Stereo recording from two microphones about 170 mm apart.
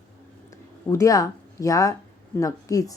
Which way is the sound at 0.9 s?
20° left (ahead or behind).